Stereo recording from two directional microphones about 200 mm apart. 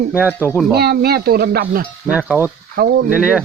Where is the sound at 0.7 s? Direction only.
50° right (ahead or behind).